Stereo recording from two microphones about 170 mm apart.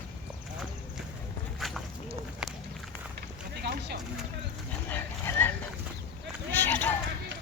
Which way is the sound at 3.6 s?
70° right (ahead or behind).